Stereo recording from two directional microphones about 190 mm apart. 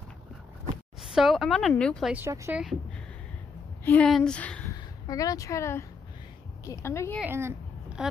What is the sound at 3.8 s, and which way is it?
Speech, 10° left (ahead or behind).